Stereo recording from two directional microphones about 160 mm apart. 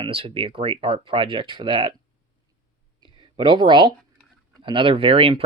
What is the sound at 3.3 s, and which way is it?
Speech, 30° right (ahead or behind).